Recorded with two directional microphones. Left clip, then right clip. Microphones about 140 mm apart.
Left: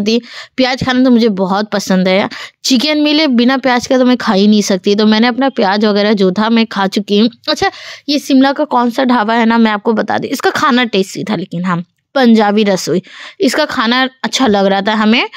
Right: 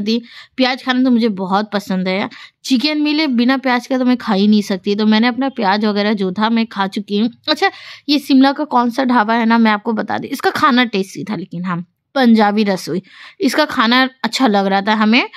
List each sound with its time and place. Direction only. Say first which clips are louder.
0.0 s a woman's voice: left 6 dB; 40° left (ahead or behind)
7.2 s a woman's voice: left 2 dB; 30° left (ahead or behind)